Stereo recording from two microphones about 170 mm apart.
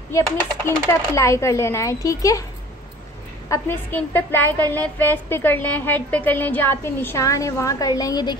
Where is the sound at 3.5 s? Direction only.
10° left (ahead or behind).